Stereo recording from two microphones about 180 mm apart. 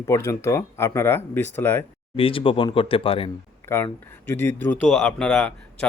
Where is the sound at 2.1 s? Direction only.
30° left (ahead or behind).